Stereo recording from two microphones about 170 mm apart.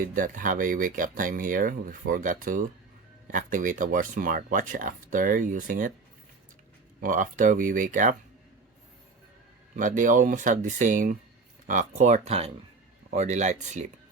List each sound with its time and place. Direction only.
0.0 s speech: 55° right (ahead or behind)
7.0 s speech: 50° right (ahead or behind)
9.7 s speech: 50° right (ahead or behind)